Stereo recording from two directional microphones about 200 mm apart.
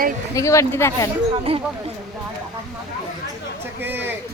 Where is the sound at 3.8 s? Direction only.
10° right (ahead or behind).